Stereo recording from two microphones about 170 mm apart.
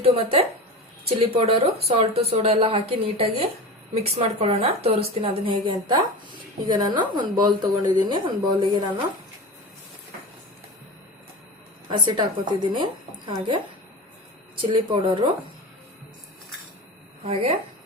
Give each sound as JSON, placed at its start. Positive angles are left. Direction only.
{"t": 0.0, "sound": "a woman's voice", "side_deg": -35}
{"t": 11.9, "sound": "a woman's voice", "side_deg": -25}
{"t": 14.6, "sound": "a woman's voice", "side_deg": -25}